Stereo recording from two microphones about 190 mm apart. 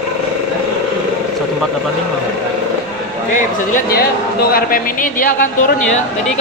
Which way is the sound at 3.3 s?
45° left (ahead or behind).